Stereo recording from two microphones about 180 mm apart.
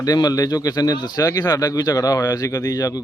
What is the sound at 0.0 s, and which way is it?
Speech, 20° left (ahead or behind).